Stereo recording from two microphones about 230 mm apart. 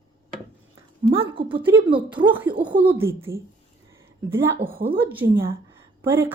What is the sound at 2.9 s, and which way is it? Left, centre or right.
Speech, centre.